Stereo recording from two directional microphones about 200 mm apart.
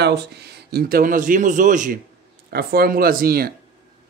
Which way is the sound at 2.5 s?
50° right (ahead or behind).